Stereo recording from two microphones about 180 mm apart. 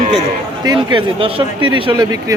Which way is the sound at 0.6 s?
25° right (ahead or behind).